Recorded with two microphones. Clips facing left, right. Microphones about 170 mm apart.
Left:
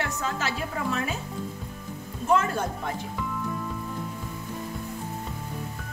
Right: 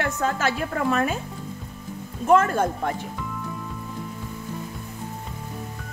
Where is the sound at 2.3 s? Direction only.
50° right (ahead or behind).